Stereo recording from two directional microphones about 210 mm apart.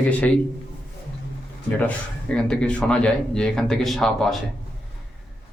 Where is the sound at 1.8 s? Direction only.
5° left (ahead or behind).